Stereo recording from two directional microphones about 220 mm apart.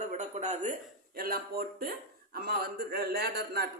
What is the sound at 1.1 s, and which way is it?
A man's voice, 40° right (ahead or behind).